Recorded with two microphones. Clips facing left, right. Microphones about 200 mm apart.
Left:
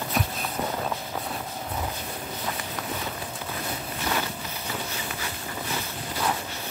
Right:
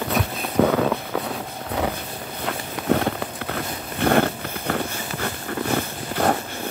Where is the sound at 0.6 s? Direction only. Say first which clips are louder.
Right 13 dB; 85° right.